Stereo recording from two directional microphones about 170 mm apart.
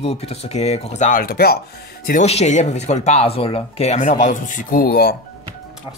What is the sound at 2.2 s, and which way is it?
Speech, 40° left (ahead or behind).